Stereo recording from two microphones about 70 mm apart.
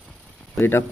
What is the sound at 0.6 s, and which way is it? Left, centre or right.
Speech, left.